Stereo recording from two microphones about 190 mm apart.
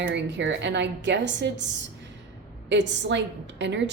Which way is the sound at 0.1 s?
65° right (ahead or behind).